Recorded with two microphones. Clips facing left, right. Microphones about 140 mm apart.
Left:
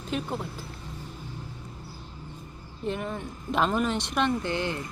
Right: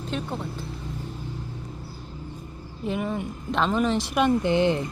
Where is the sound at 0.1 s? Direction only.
5° left (ahead or behind).